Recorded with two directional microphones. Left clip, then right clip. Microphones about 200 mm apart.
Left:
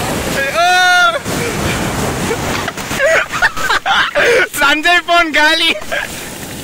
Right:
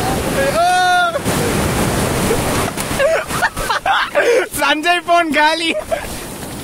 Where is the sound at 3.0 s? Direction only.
5° left (ahead or behind).